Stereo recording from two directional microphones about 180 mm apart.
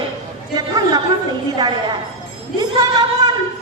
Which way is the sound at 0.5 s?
20° right (ahead or behind).